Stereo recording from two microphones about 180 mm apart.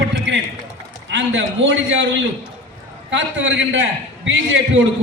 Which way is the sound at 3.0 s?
90° right.